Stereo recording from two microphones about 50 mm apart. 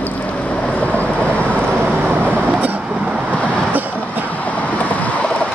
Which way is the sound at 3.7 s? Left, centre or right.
Right.